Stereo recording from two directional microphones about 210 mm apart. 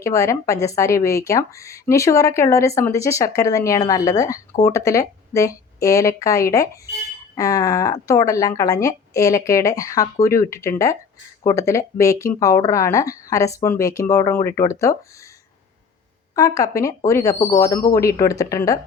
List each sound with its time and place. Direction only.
0.0 s speech: 15° left (ahead or behind)
16.3 s speech: 15° left (ahead or behind)